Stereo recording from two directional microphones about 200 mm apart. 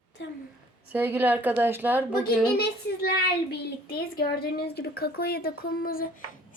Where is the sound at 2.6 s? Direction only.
55° left (ahead or behind).